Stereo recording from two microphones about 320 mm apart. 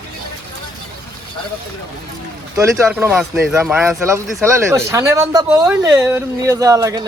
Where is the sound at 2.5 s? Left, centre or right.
Centre.